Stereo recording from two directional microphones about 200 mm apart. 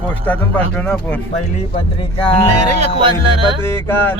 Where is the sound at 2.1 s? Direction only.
25° left (ahead or behind).